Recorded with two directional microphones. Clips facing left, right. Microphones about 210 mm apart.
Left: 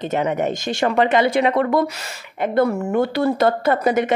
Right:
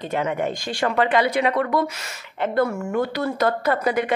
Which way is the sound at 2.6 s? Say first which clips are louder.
Left 4 dB; 35° left (ahead or behind).